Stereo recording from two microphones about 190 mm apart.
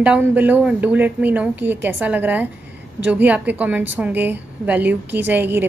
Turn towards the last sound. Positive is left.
turn(degrees=-10)  # may be behind; listen again after turning